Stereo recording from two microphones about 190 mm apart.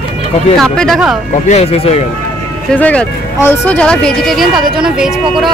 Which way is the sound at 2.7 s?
5° left (ahead or behind).